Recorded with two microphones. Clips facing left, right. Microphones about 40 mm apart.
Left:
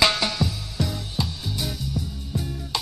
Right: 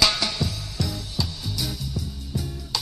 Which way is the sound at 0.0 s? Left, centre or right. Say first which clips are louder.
Left 2 dB; centre.